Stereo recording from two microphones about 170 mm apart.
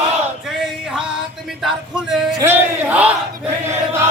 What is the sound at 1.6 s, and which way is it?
Music, centre (ahead or behind).